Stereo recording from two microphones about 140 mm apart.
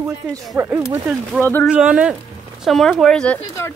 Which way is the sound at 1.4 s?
15° left (ahead or behind).